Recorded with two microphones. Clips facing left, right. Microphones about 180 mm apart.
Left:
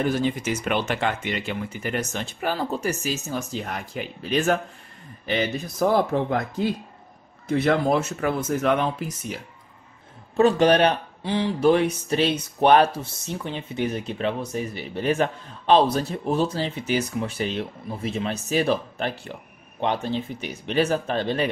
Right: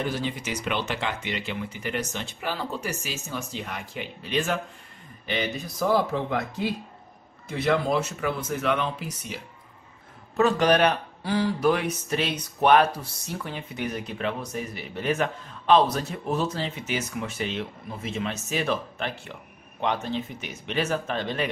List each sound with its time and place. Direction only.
0.0 s speech: 50° left (ahead or behind)
7.5 s speech: 50° left (ahead or behind)
10.3 s speech: 30° left (ahead or behind)